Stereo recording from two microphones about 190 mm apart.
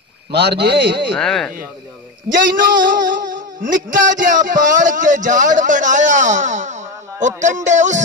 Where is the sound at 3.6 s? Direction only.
45° right (ahead or behind).